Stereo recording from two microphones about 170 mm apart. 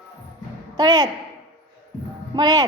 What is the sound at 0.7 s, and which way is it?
Speech, 25° right (ahead or behind).